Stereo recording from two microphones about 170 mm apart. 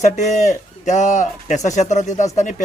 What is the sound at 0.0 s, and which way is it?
Speech, 45° left (ahead or behind).